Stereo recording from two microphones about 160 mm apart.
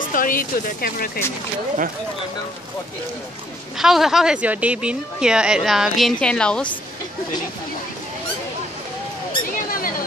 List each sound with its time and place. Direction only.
0.1 s speech: 60° left (ahead or behind)
3.7 s a woman's voice: centre (ahead or behind)
9.7 s a sound: 60° left (ahead or behind)